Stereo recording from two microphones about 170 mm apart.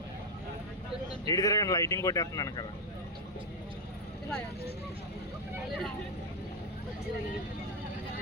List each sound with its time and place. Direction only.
1.3 s speech: 20° left (ahead or behind)